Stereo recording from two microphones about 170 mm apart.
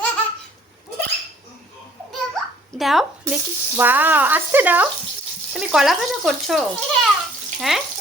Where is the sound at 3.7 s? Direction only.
10° right (ahead or behind).